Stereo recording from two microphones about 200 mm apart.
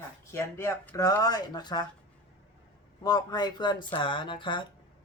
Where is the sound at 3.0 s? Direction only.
20° left (ahead or behind).